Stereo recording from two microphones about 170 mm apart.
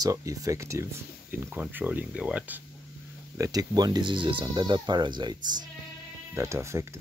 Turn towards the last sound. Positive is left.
turn(degrees=-15)  # may be behind; listen again after turning